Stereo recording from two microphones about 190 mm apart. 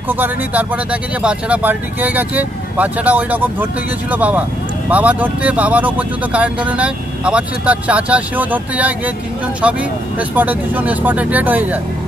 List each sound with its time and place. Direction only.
0.1 s speech: 10° right (ahead or behind)
10.3 s speech: 10° right (ahead or behind)